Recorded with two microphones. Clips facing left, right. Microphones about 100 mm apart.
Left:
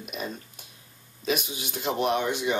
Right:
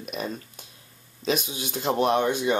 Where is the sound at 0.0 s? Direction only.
40° right (ahead or behind).